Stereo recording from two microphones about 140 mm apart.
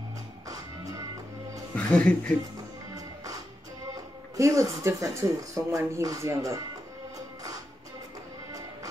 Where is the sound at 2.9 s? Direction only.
25° right (ahead or behind).